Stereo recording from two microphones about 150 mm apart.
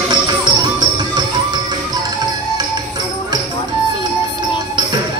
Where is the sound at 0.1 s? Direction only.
30° right (ahead or behind).